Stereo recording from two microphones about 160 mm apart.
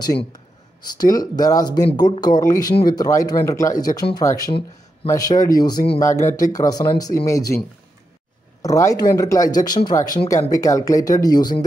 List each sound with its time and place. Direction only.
0.0 s speech: 25° left (ahead or behind)
8.6 s speech: 20° left (ahead or behind)